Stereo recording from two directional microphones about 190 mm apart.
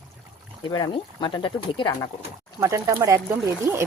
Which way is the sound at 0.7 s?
20° left (ahead or behind).